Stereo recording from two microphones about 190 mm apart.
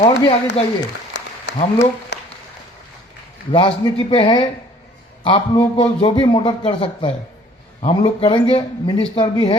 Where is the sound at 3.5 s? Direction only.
25° left (ahead or behind).